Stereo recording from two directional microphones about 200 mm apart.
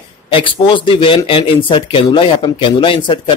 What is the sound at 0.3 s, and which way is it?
Speech, 25° left (ahead or behind).